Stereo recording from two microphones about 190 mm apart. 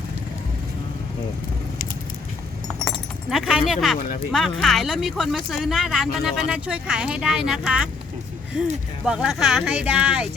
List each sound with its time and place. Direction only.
3.2 s speech: centre (ahead or behind)
9.0 s speech: 5° right (ahead or behind)